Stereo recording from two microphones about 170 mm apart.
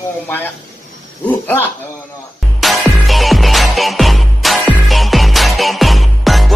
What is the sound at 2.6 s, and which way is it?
Music, centre (ahead or behind).